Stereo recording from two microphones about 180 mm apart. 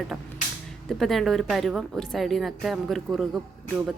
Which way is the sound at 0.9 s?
Centre (ahead or behind).